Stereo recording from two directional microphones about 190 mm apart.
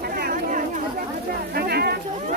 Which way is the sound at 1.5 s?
55° right (ahead or behind).